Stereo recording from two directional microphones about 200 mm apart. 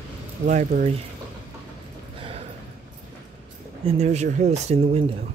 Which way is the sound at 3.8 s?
30° right (ahead or behind).